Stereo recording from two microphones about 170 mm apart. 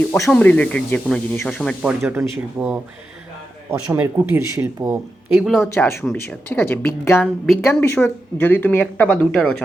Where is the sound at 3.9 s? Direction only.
15° right (ahead or behind).